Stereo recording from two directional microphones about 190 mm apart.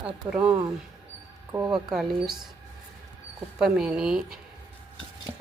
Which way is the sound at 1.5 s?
20° right (ahead or behind).